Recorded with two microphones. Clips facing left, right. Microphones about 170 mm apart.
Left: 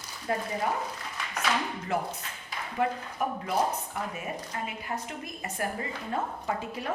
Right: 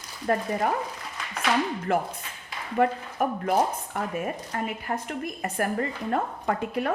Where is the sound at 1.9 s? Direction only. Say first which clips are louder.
Right 5 dB; 60° right (ahead or behind).